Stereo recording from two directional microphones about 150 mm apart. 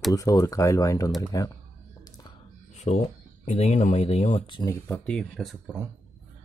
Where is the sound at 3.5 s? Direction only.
50° left (ahead or behind).